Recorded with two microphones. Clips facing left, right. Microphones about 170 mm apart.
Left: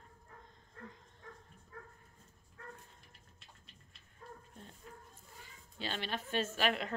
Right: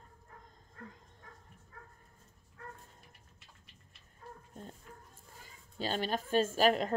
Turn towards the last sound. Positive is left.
turn(degrees=-40)  # may be behind; listen again after turning